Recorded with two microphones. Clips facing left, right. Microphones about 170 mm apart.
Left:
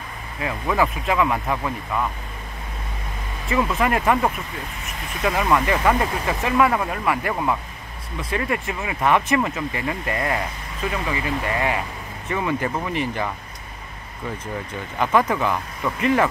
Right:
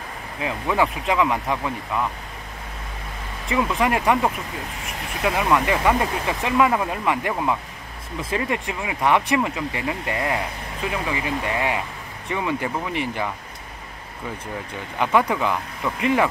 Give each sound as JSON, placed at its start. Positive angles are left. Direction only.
{"t": 0.4, "sound": "speech", "side_deg": -15}
{"t": 3.4, "sound": "speech", "side_deg": -15}
{"t": 15.0, "sound": "speech", "side_deg": -10}